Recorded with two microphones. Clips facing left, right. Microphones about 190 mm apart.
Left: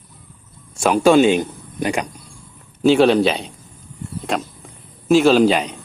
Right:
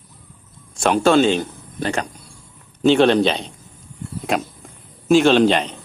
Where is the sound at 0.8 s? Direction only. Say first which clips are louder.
Left 2 dB; 10° left (ahead or behind).